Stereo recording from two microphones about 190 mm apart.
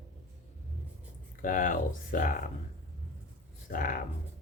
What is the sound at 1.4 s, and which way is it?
Speech, 45° left (ahead or behind).